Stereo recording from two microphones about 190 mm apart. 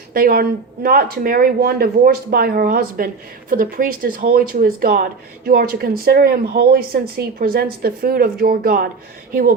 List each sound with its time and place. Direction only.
0.1 s a woman's voice: 50° right (ahead or behind)